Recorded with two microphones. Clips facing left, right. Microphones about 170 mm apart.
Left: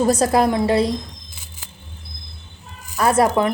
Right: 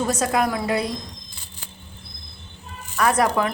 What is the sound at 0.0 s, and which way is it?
Speech, 35° left (ahead or behind).